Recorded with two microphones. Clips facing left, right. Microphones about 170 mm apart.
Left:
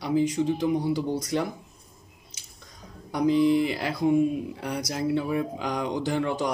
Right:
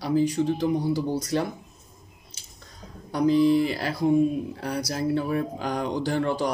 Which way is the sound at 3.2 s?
20° left (ahead or behind).